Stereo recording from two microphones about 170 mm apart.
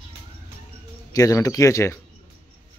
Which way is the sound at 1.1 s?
20° left (ahead or behind).